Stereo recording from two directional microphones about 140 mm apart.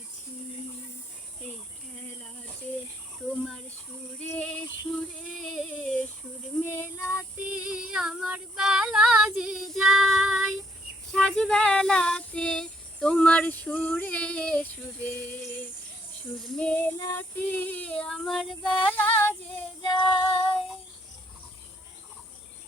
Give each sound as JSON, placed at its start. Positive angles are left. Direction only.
{"t": 3.2, "sound": "a child's voice", "side_deg": 0}
{"t": 4.2, "sound": "female singing", "side_deg": 10}
{"t": 5.3, "sound": "a sound", "side_deg": 5}
{"t": 6.6, "sound": "child singing", "side_deg": 20}
{"t": 7.6, "sound": "female singing", "side_deg": -5}
{"t": 11.1, "sound": "a sound", "side_deg": 5}
{"t": 16.4, "sound": "female singing", "side_deg": 10}
{"t": 19.8, "sound": "child singing", "side_deg": 35}